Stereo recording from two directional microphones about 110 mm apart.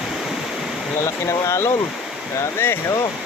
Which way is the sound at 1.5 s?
25° left (ahead or behind).